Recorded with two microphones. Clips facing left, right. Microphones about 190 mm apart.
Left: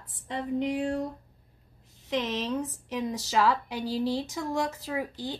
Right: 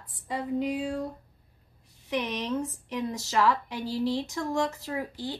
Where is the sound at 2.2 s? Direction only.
15° right (ahead or behind).